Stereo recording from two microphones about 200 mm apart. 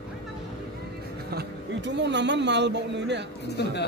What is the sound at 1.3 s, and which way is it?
A man's voice, 60° right (ahead or behind).